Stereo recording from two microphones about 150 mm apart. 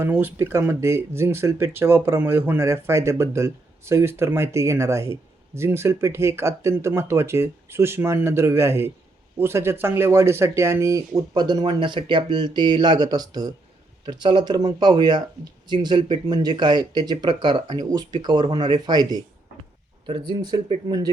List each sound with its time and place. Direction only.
0.0 s speech: 15° right (ahead or behind); by 20.6 s 30° right (ahead or behind)